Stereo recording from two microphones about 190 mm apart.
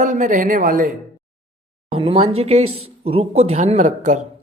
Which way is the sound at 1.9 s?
30° right (ahead or behind).